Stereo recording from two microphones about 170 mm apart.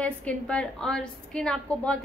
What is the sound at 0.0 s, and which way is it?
A woman's voice, 10° left (ahead or behind).